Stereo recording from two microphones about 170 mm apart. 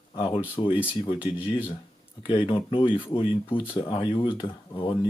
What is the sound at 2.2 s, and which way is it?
Speech, 30° left (ahead or behind).